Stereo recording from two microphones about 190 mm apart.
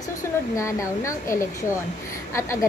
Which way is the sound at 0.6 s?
15° left (ahead or behind).